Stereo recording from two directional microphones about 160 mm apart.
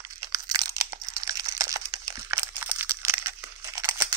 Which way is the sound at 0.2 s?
20° right (ahead or behind).